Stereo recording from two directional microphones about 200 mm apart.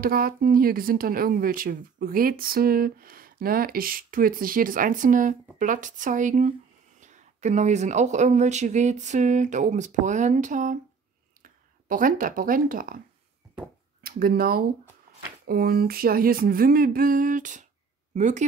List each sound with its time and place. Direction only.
0.0 s speech: 45° right (ahead or behind)
11.9 s speech: 45° right (ahead or behind)
14.0 s speech: 45° right (ahead or behind)